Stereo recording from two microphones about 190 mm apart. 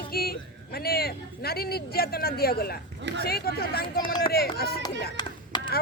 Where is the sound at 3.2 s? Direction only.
55° left (ahead or behind).